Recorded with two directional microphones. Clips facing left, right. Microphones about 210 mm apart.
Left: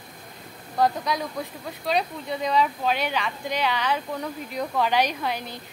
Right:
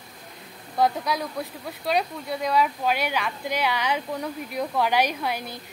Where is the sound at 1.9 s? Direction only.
5° right (ahead or behind).